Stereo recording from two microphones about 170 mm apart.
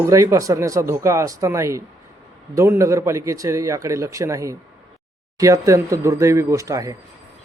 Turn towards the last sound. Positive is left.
turn(degrees=-20)  # may be behind; listen again after turning